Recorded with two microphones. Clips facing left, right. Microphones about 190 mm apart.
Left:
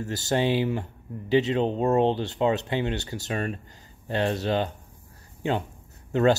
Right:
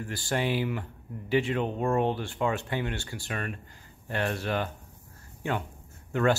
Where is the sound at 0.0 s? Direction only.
25° left (ahead or behind).